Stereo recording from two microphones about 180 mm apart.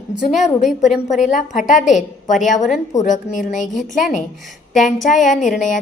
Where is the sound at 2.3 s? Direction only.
45° left (ahead or behind).